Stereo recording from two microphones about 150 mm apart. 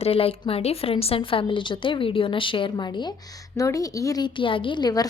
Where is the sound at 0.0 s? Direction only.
40° left (ahead or behind).